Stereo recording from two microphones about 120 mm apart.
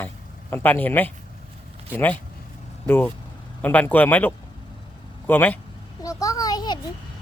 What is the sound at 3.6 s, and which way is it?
A man's voice, 15° left (ahead or behind).